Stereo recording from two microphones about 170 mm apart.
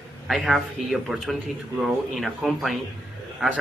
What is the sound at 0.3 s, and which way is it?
A man's voice, centre (ahead or behind).